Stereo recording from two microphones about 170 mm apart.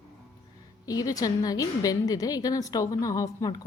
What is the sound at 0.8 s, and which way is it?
A woman's voice, 20° left (ahead or behind).